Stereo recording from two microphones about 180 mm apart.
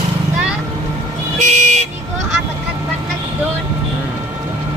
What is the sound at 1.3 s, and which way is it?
Vehicle, 40° right (ahead or behind).